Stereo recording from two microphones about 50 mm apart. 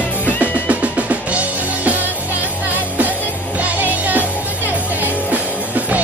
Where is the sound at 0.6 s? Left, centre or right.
Right.